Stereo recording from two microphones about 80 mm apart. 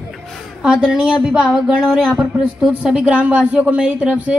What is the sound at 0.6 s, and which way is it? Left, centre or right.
A woman's voice, centre.